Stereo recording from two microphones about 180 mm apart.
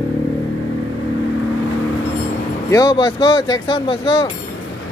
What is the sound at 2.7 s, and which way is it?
Speech, 20° left (ahead or behind).